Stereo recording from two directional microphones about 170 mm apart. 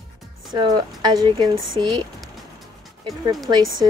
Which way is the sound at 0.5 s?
25° right (ahead or behind).